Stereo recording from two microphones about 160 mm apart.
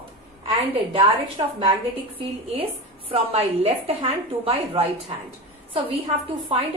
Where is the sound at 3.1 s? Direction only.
35° right (ahead or behind).